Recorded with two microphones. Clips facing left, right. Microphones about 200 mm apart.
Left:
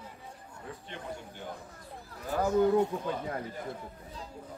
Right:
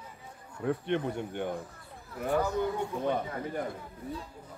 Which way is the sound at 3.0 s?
60° right (ahead or behind).